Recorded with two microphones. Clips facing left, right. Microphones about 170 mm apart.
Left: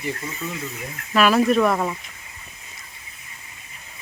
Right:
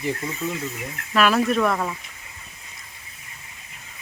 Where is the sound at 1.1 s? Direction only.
Centre (ahead or behind).